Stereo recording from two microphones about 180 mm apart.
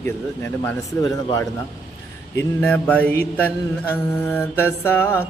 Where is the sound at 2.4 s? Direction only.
5° left (ahead or behind).